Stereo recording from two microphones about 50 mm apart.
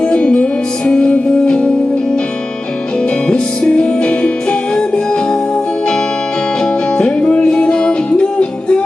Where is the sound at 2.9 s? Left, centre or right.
Centre.